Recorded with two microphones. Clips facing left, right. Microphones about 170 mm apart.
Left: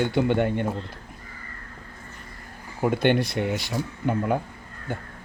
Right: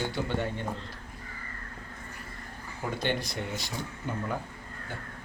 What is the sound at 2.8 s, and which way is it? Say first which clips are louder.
Speech: left 10 dB; 60° left (ahead or behind).